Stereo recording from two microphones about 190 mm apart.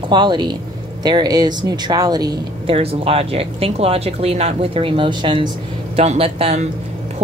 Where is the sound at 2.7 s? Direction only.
30° right (ahead or behind).